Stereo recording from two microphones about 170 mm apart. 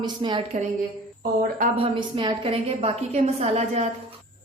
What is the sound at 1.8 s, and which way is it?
A woman's voice, 30° right (ahead or behind).